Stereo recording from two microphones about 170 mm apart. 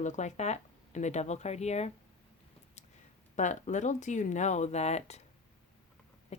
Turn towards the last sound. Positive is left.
turn(degrees=40)  # may be behind; listen again after turning